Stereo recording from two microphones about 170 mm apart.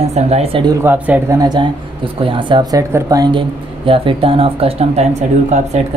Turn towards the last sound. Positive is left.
turn(degrees=-40)  # may be behind; listen again after turning